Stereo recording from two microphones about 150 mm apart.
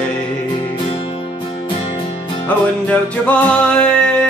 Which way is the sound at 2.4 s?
10° left (ahead or behind).